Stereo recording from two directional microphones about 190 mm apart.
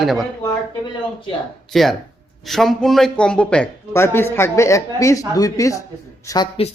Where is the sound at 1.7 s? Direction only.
Centre (ahead or behind).